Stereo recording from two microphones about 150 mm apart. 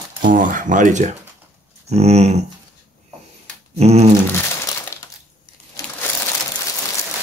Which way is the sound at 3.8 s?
45° right (ahead or behind).